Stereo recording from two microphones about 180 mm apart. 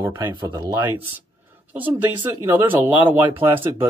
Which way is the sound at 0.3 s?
25° right (ahead or behind).